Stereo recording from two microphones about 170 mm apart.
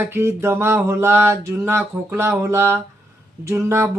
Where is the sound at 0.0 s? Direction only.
15° right (ahead or behind).